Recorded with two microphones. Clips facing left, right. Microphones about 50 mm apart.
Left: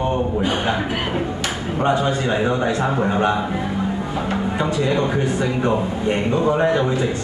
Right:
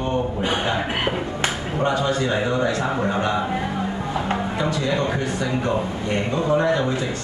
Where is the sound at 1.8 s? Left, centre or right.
Left.